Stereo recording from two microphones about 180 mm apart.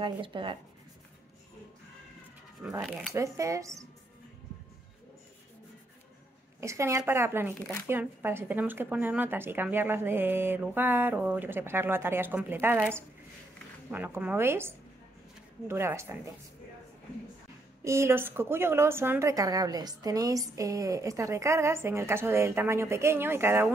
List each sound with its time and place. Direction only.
0.0 s speech: 25° right (ahead or behind)
2.6 s a woman's voice: 10° right (ahead or behind)
6.6 s a woman's voice: 15° right (ahead or behind)
13.9 s a woman's voice: 10° right (ahead or behind)
15.7 s a woman's voice: 15° right (ahead or behind)
17.8 s a woman's voice: 15° right (ahead or behind)